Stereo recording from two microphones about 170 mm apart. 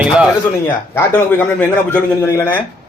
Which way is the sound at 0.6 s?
15° left (ahead or behind).